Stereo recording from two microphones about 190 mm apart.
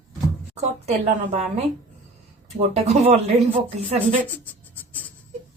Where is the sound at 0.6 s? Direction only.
35° right (ahead or behind).